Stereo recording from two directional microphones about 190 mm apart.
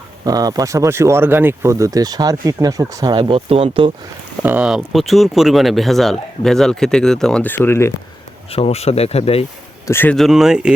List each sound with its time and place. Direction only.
0.3 s speech: 20° right (ahead or behind)
4.4 s speech: 5° right (ahead or behind); by 7.9 s 15° left (ahead or behind)
8.4 s speech: 30° left (ahead or behind)
9.8 s speech: 10° left (ahead or behind); by 10.8 s 5° right (ahead or behind)